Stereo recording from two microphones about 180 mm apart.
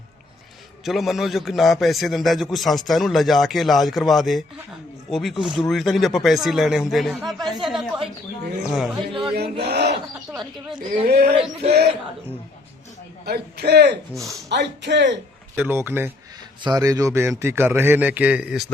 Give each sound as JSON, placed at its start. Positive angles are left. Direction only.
{"t": 0.9, "sound": "a man's voice", "side_deg": 0}
{"t": 9.3, "sound": "chant", "side_deg": -65}
{"t": 11.0, "sound": "speech", "side_deg": -60}
{"t": 11.3, "sound": "a sound", "side_deg": -35}
{"t": 13.2, "sound": "a man's voice", "side_deg": -60}
{"t": 14.1, "sound": "a man's voice", "side_deg": 0}
{"t": 14.5, "sound": "a man's voice", "side_deg": -75}
{"t": 15.5, "sound": "a man's voice", "side_deg": -10}